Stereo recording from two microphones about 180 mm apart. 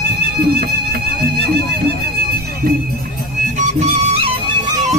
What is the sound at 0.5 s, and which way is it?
Music, 60° right (ahead or behind).